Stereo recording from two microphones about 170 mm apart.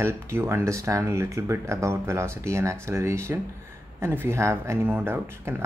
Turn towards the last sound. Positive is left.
turn(degrees=-15)  # may be behind; listen again after turning